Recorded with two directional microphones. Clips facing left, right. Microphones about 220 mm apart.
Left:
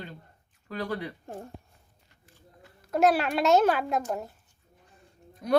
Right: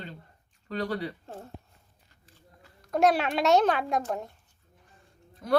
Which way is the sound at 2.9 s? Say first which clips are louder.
Even; centre (ahead or behind).